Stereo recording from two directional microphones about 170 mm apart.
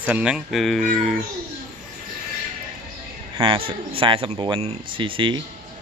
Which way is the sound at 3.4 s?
30° right (ahead or behind).